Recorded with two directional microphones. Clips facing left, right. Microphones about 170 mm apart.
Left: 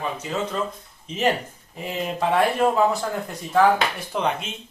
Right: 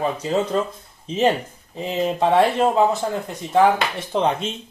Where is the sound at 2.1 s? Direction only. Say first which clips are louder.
Right 3 dB; 25° right (ahead or behind).